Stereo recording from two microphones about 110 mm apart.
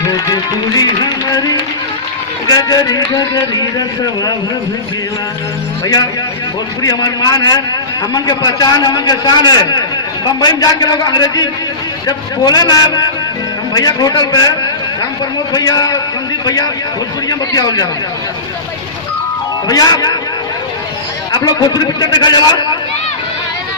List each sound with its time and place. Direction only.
0.3 s a man's voice: 35° left (ahead or behind)
6.8 s a man's voice: 35° left (ahead or behind)
17.3 s a man's voice: 35° left (ahead or behind)
19.7 s a man's voice: 35° left (ahead or behind)
21.3 s a man's voice: 40° left (ahead or behind)